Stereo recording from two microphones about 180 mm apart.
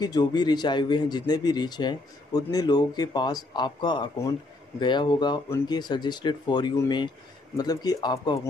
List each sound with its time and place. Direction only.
0.0 s speech: 20° left (ahead or behind)